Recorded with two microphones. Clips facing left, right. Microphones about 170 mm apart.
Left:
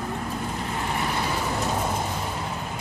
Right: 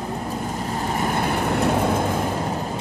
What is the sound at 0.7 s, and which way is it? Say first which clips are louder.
Vehicle: right 5 dB; 40° right (ahead or behind).